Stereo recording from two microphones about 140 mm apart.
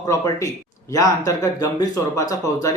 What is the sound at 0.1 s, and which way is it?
Speech, 20° left (ahead or behind).